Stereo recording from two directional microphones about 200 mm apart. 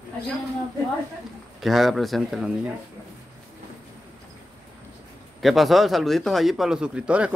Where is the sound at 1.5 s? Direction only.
Centre (ahead or behind).